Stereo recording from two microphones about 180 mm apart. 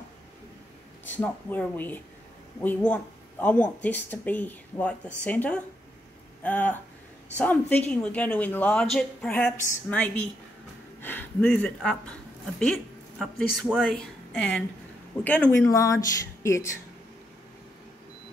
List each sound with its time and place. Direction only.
1.0 s a woman's voice: 10° left (ahead or behind)